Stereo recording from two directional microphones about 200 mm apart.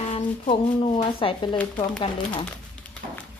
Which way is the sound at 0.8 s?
25° left (ahead or behind).